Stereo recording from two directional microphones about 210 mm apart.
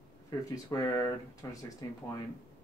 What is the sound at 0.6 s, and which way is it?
Speech, 15° left (ahead or behind).